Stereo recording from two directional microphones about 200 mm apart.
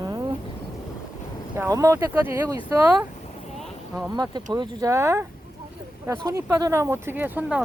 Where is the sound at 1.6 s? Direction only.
15° right (ahead or behind).